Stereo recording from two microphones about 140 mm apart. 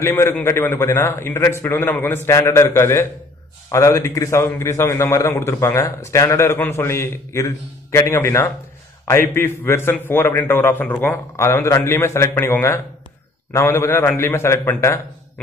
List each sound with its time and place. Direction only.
0.0 s a man's voice: 15° left (ahead or behind)